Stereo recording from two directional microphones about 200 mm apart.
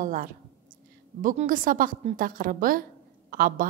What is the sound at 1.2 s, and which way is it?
A woman's voice, 40° right (ahead or behind).